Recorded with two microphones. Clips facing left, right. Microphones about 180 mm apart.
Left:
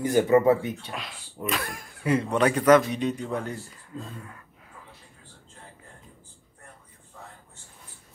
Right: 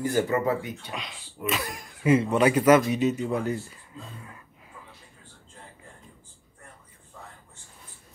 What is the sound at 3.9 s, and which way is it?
Speech, 40° left (ahead or behind).